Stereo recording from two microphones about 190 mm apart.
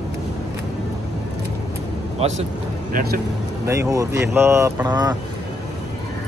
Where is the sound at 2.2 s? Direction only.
30° right (ahead or behind).